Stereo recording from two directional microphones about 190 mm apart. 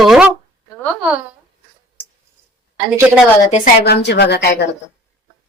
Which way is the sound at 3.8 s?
60° left (ahead or behind).